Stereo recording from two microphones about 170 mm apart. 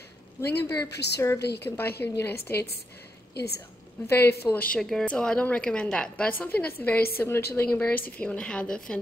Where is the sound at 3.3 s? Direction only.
70° left (ahead or behind).